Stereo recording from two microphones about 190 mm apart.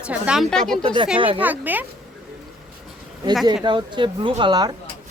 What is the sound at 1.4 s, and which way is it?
Speech, 10° right (ahead or behind).